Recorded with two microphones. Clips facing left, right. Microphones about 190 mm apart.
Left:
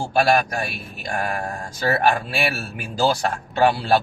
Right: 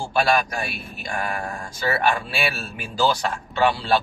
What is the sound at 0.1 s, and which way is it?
Speech, 50° left (ahead or behind).